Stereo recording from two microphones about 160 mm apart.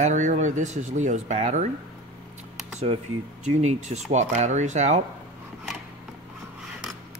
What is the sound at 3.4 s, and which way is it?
Speech, 45° right (ahead or behind).